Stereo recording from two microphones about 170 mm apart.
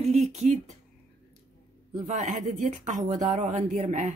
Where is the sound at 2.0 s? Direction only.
45° right (ahead or behind).